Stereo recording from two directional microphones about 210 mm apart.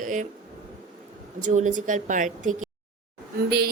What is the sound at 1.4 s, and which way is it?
A woman's voice, 35° right (ahead or behind).